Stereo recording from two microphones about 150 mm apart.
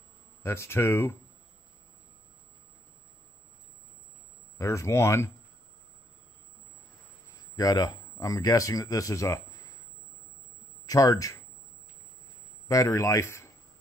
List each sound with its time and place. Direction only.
0.4 s speech: 20° left (ahead or behind)
4.6 s a man's voice: 20° left (ahead or behind)
7.5 s speech: 25° left (ahead or behind)
10.9 s speech: 25° left (ahead or behind)
12.6 s a man's voice: 20° left (ahead or behind)